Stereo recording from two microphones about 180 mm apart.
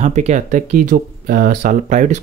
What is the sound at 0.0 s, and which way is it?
Speech, 40° right (ahead or behind).